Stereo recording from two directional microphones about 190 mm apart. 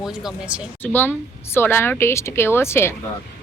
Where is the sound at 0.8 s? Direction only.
10° left (ahead or behind).